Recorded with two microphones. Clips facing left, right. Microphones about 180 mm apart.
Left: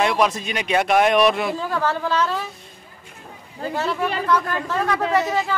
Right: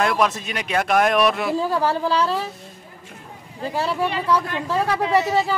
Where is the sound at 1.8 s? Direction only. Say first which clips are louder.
Right 1 dB; 35° right (ahead or behind).